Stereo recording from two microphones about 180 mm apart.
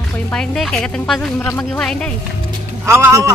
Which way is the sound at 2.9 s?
15° right (ahead or behind).